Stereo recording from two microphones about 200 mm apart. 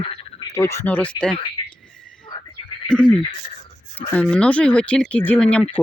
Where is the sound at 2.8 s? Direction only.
5° left (ahead or behind).